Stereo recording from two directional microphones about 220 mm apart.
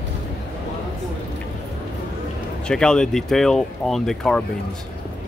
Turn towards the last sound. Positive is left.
turn(degrees=0)  # may be behind; listen again after turning